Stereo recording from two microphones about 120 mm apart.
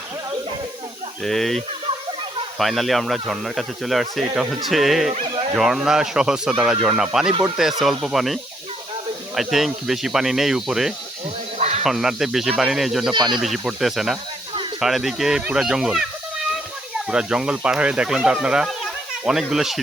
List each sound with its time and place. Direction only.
1.2 s speech: centre (ahead or behind)
5.3 s bow-wow: 50° right (ahead or behind)
5.5 s speech: centre (ahead or behind)
11.5 s a sound: 70° right (ahead or behind)
11.8 s speech: centre (ahead or behind)
17.1 s speech: 5° right (ahead or behind)